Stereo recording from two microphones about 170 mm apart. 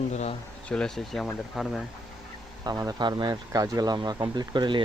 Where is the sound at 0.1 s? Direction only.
40° left (ahead or behind).